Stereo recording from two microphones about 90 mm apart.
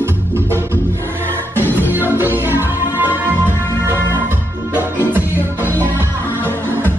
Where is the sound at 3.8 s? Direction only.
25° right (ahead or behind).